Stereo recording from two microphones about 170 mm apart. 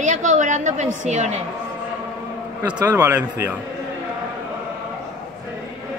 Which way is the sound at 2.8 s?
15° right (ahead or behind).